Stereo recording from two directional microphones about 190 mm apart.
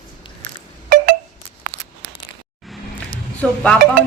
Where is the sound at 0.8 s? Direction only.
50° right (ahead or behind).